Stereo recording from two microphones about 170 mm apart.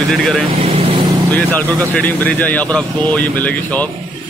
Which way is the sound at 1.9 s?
10° left (ahead or behind).